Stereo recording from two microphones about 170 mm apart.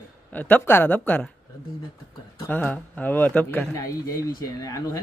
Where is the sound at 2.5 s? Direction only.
10° left (ahead or behind).